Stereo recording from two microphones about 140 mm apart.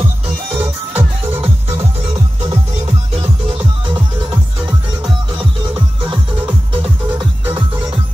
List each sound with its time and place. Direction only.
0.9 s music: 45° right (ahead or behind)